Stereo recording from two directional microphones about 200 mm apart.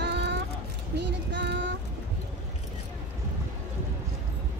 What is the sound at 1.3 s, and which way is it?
Child singing, 60° right (ahead or behind).